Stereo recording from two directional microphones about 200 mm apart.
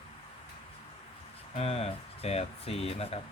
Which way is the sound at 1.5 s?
30° left (ahead or behind).